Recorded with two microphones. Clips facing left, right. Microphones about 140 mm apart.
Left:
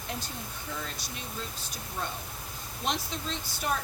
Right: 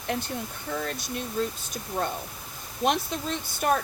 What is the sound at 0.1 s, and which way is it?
A woman's voice, 65° right (ahead or behind).